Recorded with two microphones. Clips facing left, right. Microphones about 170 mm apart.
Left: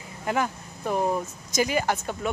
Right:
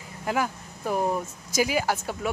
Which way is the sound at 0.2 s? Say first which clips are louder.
Left 1 dB; 5° right (ahead or behind).